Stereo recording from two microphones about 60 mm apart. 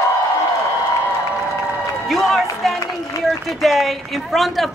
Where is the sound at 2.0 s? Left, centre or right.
Centre.